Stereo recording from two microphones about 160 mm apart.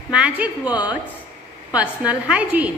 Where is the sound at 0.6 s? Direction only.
25° left (ahead or behind).